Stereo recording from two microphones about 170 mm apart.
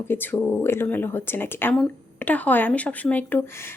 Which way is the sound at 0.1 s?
10° left (ahead or behind).